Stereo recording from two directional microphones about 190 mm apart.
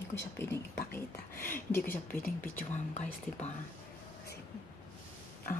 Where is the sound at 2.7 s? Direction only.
35° left (ahead or behind).